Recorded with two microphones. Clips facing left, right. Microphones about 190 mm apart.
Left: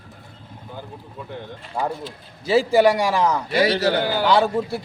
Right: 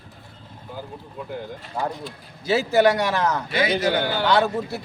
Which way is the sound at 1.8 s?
10° left (ahead or behind).